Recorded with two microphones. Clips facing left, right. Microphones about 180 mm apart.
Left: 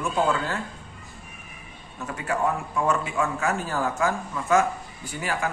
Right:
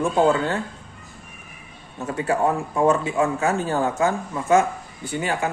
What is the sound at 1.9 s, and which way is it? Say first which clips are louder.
Speech: right 5 dB; 30° right (ahead or behind).